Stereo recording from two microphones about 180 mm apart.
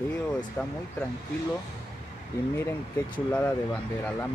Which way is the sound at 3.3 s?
10° left (ahead or behind).